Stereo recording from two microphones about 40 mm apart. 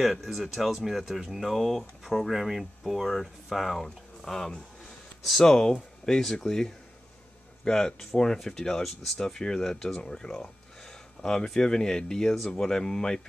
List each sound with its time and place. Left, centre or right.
0.0 s speech: centre